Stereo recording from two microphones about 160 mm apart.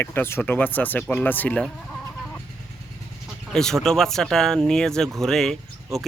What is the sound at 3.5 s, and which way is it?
A man's voice, 5° left (ahead or behind).